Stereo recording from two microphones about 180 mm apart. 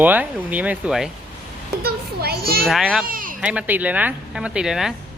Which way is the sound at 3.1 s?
50° right (ahead or behind).